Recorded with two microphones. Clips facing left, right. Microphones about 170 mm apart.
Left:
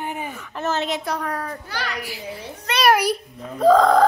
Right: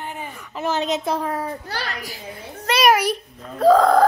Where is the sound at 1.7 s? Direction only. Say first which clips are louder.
Even; 40° right (ahead or behind).